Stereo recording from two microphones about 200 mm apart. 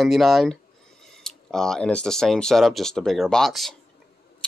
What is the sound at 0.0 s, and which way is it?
Speech, centre (ahead or behind).